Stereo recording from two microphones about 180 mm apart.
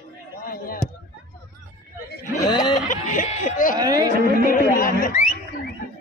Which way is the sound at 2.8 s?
40° left (ahead or behind).